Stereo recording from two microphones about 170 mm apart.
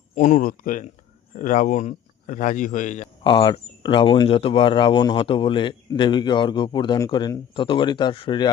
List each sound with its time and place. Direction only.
0.2 s speech: 45° left (ahead or behind)
3.2 s speech: 30° left (ahead or behind)